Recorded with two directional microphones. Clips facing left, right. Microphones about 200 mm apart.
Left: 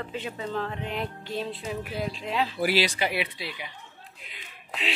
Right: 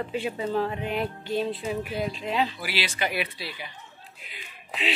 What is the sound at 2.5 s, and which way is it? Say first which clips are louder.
Speech: left 7 dB; 45° left (ahead or behind).